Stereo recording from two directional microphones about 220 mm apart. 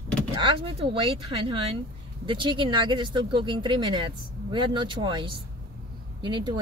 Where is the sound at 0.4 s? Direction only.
25° right (ahead or behind).